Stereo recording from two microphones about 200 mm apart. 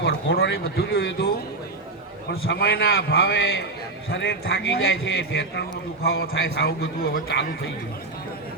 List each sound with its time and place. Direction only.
0.0 s a man's voice: 50° left (ahead or behind)
4.8 s a man's voice: 75° left (ahead or behind); by 7.7 s 55° left (ahead or behind)